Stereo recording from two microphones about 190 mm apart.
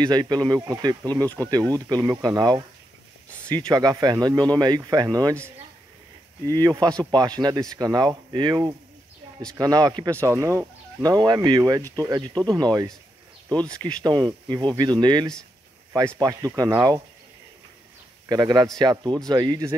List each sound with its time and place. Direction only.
0.0 s speech: 20° right (ahead or behind)
6.5 s speech: 20° right (ahead or behind)
14.0 s speech: 25° right (ahead or behind)
18.3 s speech: 20° right (ahead or behind)